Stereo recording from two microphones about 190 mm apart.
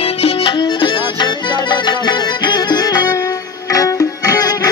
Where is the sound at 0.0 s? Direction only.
30° left (ahead or behind).